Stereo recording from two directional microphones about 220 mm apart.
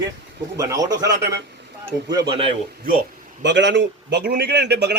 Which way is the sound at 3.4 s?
55° right (ahead or behind).